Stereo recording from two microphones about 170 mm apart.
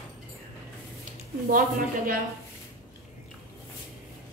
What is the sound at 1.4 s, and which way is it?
Speech, 55° right (ahead or behind).